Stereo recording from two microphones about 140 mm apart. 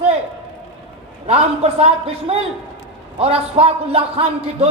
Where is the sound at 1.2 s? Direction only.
45° right (ahead or behind).